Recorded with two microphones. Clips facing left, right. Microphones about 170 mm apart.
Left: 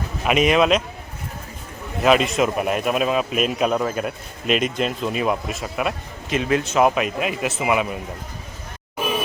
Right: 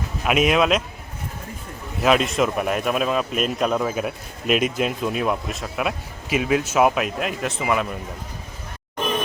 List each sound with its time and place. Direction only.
0.3 s speech: centre (ahead or behind)
2.0 s speech: centre (ahead or behind)
9.0 s music: 10° left (ahead or behind)